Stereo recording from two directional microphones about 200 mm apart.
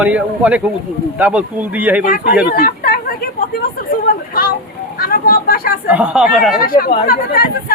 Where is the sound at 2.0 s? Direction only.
45° left (ahead or behind).